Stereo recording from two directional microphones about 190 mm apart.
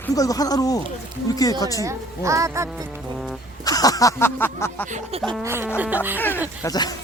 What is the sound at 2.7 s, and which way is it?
Music, centre (ahead or behind).